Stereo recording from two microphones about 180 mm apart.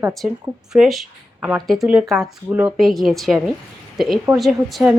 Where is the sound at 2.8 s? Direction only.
Centre (ahead or behind).